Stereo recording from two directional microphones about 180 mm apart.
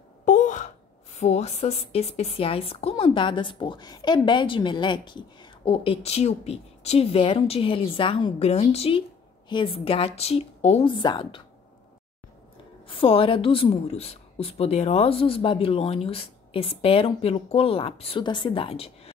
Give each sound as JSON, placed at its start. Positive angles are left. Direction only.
{"t": 0.2, "sound": "a sound", "side_deg": 45}
{"t": 1.2, "sound": "a woman's voice", "side_deg": 40}
{"t": 12.8, "sound": "a woman's voice", "side_deg": 30}